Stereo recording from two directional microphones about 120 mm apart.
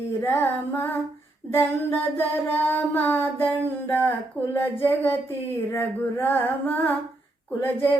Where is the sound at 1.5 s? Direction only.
20° left (ahead or behind).